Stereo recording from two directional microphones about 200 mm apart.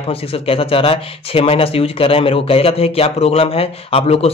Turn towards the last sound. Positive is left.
turn(degrees=30)  # may be behind; listen again after turning